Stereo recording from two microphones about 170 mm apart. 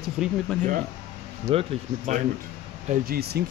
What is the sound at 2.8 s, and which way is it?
Speech, 60° right (ahead or behind).